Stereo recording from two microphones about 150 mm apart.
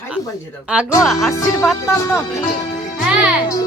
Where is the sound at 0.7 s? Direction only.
5° right (ahead or behind).